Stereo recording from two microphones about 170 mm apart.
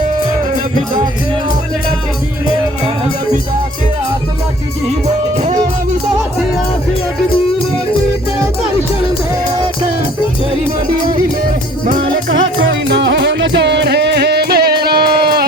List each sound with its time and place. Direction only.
12.3 s music: 90° right; by 15.4 s 65° right (ahead or behind)